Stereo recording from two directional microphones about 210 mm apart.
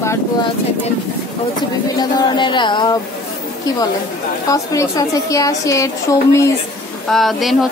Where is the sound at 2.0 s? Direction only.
20° left (ahead or behind).